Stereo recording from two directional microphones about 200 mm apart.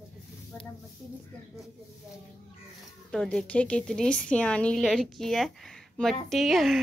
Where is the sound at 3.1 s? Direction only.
5° left (ahead or behind).